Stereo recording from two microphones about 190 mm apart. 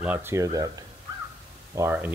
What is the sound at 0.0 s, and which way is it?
Speech, 10° right (ahead or behind).